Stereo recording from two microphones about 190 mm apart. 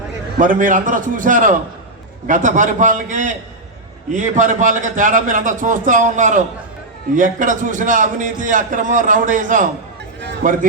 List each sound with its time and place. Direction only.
0.3 s a man's voice: 45° right (ahead or behind)